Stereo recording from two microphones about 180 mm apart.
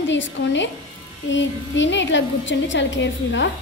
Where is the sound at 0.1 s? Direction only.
90° left.